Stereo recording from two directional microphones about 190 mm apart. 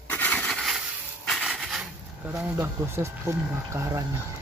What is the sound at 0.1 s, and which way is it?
Crushing, 10° left (ahead or behind).